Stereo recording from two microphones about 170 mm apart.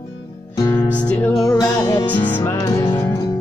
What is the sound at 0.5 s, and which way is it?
Music, 25° left (ahead or behind).